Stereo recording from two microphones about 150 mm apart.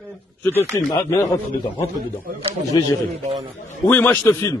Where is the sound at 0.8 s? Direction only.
20° left (ahead or behind).